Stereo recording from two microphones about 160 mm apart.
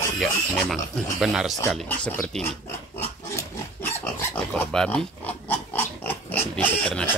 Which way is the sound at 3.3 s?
15° left (ahead or behind).